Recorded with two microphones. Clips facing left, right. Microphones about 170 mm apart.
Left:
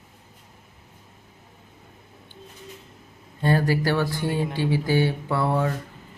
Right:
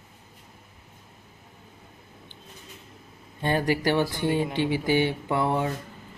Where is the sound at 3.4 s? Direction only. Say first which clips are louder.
Left 2 dB; 15° right (ahead or behind).